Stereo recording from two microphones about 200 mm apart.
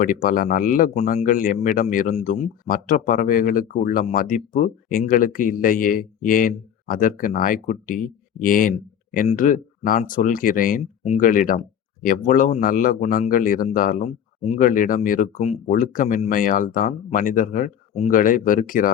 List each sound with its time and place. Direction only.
0.0 s speech: 45° left (ahead or behind)